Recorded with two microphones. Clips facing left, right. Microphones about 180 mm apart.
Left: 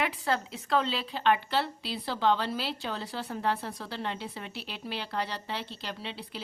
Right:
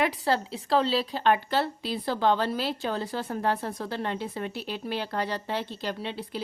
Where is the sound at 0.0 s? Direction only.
35° right (ahead or behind).